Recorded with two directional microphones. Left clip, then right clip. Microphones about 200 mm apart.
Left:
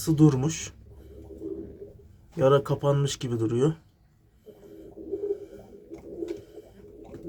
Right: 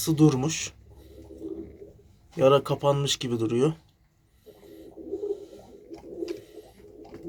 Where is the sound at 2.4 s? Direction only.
15° left (ahead or behind).